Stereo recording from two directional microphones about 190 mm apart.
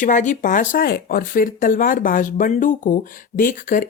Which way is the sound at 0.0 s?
40° left (ahead or behind).